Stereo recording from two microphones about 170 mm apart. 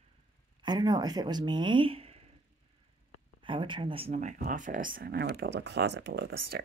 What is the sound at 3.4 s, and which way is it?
Speech, 30° right (ahead or behind).